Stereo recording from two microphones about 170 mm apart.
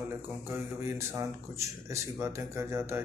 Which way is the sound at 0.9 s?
15° right (ahead or behind).